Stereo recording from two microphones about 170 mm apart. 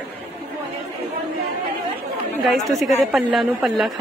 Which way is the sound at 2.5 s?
Centre (ahead or behind).